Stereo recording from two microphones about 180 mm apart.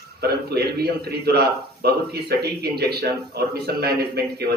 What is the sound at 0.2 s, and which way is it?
A man's voice, 60° right (ahead or behind).